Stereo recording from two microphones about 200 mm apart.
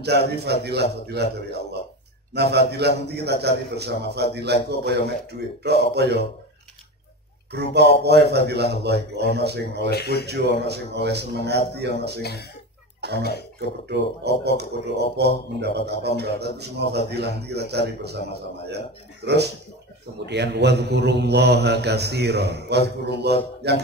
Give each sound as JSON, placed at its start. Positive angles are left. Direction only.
{"t": 0.3, "sound": "speech", "side_deg": -55}
{"t": 7.5, "sound": "speech", "side_deg": -55}
{"t": 9.8, "sound": "speech", "side_deg": 55}
{"t": 10.2, "sound": "speech", "side_deg": -55}
{"t": 12.2, "sound": "speech", "side_deg": 55}
{"t": 13.6, "sound": "speech", "side_deg": -55}